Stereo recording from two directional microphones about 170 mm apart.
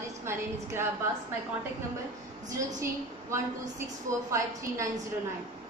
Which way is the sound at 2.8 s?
15° right (ahead or behind).